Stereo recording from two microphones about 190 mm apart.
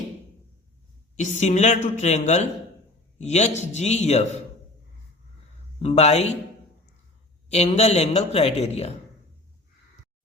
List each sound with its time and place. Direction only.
1.1 s a woman's voice: 40° left (ahead or behind)
5.8 s a woman's voice: 35° left (ahead or behind)
7.5 s a woman's voice: 35° left (ahead or behind)